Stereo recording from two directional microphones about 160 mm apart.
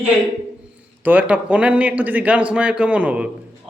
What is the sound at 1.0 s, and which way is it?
A man's voice, 10° right (ahead or behind).